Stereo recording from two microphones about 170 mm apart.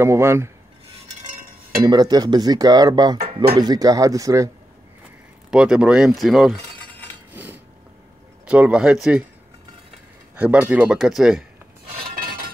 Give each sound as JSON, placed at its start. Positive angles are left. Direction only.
{"t": 0.0, "sound": "speech", "side_deg": -15}
{"t": 1.8, "sound": "speech", "side_deg": -25}
{"t": 5.5, "sound": "speech", "side_deg": -5}
{"t": 7.3, "sound": "dishes", "side_deg": -10}
{"t": 8.5, "sound": "speech", "side_deg": -5}
{"t": 10.3, "sound": "speech", "side_deg": -5}
{"t": 12.0, "sound": "chink", "side_deg": -60}